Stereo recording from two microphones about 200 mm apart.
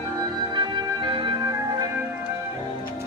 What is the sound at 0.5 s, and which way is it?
Music, 20° right (ahead or behind).